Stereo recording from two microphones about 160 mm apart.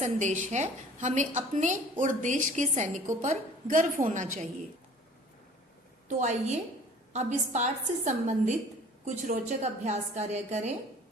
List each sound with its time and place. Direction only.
0.0 s a woman's voice: 50° right (ahead or behind)
6.1 s a woman's voice: 45° right (ahead or behind)